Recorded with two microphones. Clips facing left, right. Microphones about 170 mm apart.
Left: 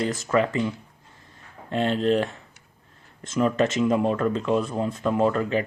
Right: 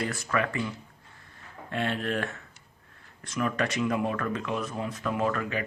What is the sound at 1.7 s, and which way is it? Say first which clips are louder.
Speech: left 8 dB; 25° left (ahead or behind).